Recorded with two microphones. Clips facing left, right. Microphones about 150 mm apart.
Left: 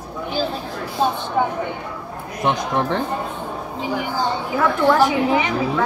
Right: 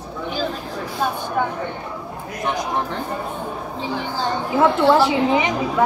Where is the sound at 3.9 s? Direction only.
15° left (ahead or behind).